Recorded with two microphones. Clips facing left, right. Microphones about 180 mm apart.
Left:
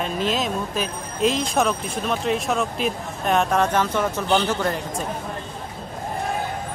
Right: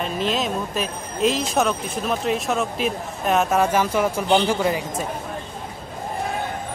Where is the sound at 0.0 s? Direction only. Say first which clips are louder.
Even; centre (ahead or behind).